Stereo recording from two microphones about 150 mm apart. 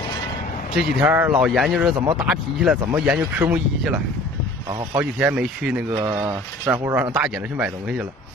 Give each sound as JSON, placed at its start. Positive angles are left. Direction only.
{"t": 0.7, "sound": "speech", "side_deg": -10}
{"t": 5.2, "sound": "speech", "side_deg": -5}
{"t": 6.0, "sound": "speech", "side_deg": -25}